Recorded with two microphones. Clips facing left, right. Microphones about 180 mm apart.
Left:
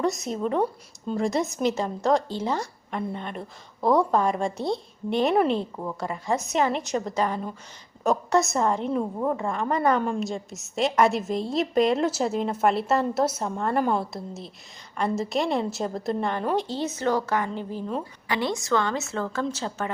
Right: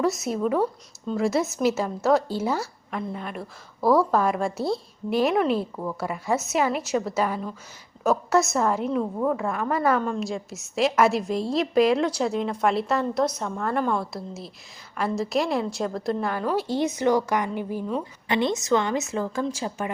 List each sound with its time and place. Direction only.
0.0 s a woman's voice: 5° right (ahead or behind)
16.6 s a woman's voice: 15° right (ahead or behind)